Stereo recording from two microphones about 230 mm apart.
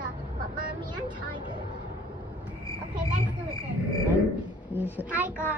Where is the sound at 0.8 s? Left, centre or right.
Centre.